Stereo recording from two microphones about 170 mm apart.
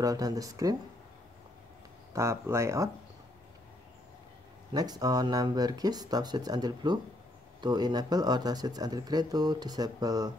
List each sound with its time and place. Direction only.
0.0 s speech: 20° right (ahead or behind)
2.1 s speech: 15° right (ahead or behind)
4.7 s speech: 25° right (ahead or behind)